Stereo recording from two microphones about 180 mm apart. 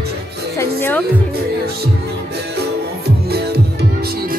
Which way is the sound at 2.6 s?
60° right (ahead or behind).